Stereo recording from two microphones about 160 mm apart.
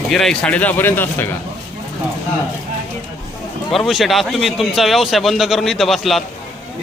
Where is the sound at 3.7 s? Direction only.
Centre (ahead or behind).